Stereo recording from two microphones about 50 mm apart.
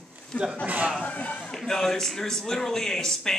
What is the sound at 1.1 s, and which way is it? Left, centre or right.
Speech, left.